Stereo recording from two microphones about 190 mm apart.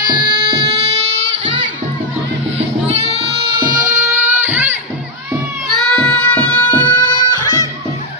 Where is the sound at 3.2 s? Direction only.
60° right (ahead or behind).